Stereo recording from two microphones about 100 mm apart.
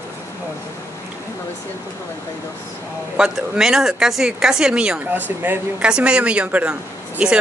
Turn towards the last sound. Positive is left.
turn(degrees=-10)  # may be behind; listen again after turning